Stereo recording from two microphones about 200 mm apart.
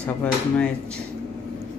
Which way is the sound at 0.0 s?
5° left (ahead or behind).